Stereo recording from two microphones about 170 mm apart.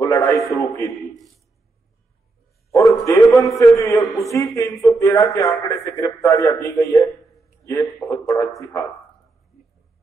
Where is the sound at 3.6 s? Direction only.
20° left (ahead or behind).